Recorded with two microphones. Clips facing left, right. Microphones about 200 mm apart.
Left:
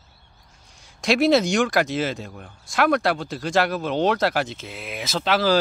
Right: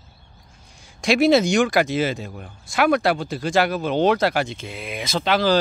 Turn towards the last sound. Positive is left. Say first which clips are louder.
# right 1 dB
turn(degrees=5)  # may be behind; listen again after turning